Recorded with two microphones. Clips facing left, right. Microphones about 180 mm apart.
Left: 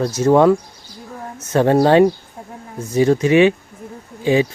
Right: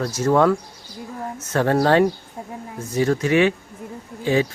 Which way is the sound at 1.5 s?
20° left (ahead or behind).